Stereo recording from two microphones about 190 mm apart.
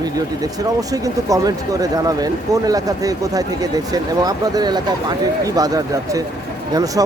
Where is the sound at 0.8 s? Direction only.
20° right (ahead or behind).